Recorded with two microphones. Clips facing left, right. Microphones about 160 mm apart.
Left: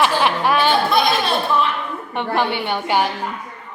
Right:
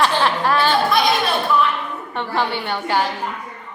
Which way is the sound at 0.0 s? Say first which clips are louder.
Left 1 dB; 15° left (ahead or behind).